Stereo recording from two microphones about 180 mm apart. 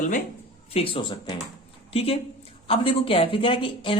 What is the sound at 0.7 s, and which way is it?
A woman's voice, 30° left (ahead or behind).